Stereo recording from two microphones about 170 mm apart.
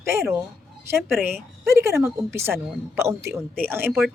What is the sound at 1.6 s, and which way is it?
Speech, 15° right (ahead or behind).